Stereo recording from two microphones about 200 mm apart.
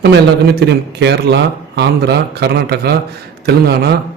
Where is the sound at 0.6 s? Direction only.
55° right (ahead or behind).